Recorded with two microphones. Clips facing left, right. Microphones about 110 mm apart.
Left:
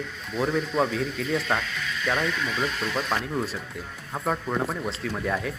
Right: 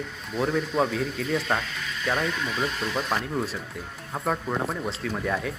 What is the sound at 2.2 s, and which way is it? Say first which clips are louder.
Speech: left 1 dB; 25° right (ahead or behind).